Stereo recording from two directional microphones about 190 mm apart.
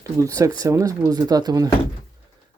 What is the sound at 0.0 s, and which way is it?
Speech, 15° right (ahead or behind).